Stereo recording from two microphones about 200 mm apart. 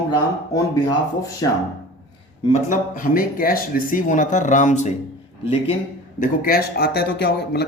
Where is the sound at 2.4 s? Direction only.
40° left (ahead or behind).